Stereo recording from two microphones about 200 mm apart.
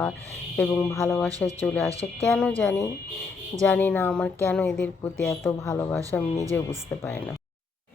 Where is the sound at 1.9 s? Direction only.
15° right (ahead or behind).